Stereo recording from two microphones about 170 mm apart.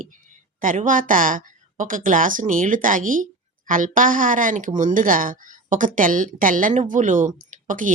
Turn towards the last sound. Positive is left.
turn(degrees=-50)  # may be behind; listen again after turning